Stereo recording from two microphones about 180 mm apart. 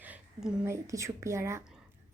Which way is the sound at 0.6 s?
15° right (ahead or behind).